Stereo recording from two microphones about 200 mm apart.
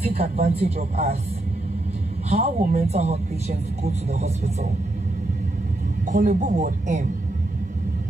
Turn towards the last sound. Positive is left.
turn(degrees=-40)  # may be behind; listen again after turning